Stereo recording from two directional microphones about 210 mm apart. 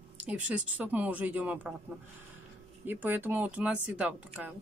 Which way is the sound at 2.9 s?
10° right (ahead or behind).